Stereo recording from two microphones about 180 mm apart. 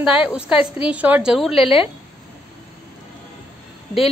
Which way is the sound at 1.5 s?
30° left (ahead or behind).